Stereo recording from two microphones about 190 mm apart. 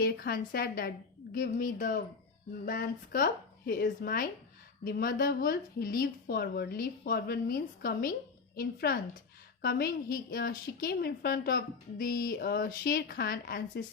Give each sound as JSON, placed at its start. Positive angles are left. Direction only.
{"t": 0.0, "sound": "a woman's voice", "side_deg": 50}